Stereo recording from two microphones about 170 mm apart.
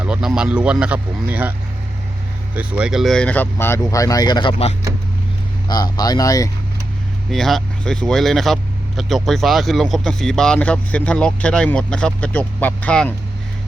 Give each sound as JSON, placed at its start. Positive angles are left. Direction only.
{"t": 0.0, "sound": "speech", "side_deg": -5}
{"t": 2.6, "sound": "speech", "side_deg": -5}
{"t": 7.3, "sound": "speech", "side_deg": 0}